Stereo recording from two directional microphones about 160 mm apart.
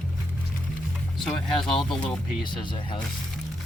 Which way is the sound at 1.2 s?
Centre (ahead or behind).